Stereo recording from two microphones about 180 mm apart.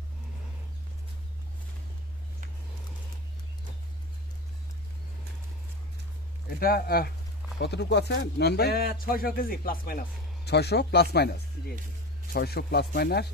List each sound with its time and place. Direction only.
6.6 s speech: 55° left (ahead or behind)
7.6 s speech: 70° left (ahead or behind)